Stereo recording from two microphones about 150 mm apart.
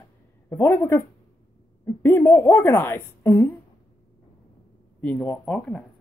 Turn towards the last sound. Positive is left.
turn(degrees=5)  # may be behind; listen again after turning